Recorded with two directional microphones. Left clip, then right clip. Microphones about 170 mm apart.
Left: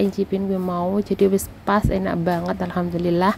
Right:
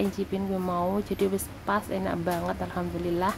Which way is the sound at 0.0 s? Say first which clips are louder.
Left 8 dB; 25° left (ahead or behind).